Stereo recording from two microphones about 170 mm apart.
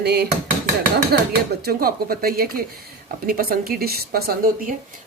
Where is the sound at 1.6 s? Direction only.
60° right (ahead or behind).